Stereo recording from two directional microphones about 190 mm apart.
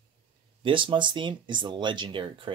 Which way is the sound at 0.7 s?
25° right (ahead or behind).